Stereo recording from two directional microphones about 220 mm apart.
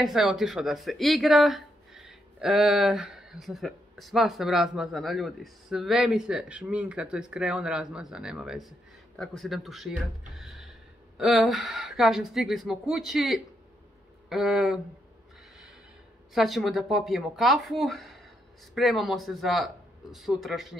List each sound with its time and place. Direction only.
0.0 s speech: centre (ahead or behind)
16.3 s speech: centre (ahead or behind)